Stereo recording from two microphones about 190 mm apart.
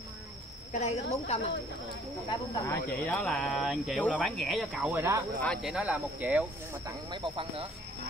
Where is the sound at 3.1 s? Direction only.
5° left (ahead or behind).